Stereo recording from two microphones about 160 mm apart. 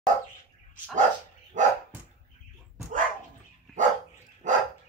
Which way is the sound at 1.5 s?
50° right (ahead or behind).